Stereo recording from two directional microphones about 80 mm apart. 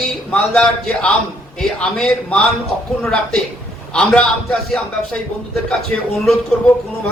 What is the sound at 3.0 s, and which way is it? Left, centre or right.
A man's voice, centre.